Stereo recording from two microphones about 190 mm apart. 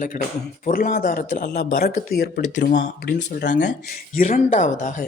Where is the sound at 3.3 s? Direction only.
40° left (ahead or behind).